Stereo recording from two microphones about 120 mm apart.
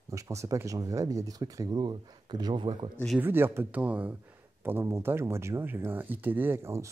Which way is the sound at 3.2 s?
20° right (ahead or behind).